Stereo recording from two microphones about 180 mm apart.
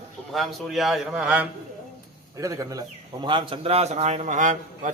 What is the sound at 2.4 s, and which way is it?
A man's voice, 20° right (ahead or behind).